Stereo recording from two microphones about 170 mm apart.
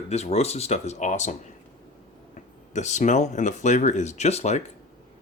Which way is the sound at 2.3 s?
45° left (ahead or behind).